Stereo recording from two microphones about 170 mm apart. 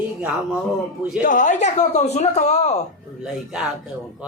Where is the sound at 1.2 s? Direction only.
50° left (ahead or behind).